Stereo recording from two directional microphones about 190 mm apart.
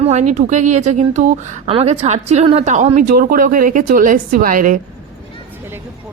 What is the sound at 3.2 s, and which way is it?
A woman's voice, 50° right (ahead or behind).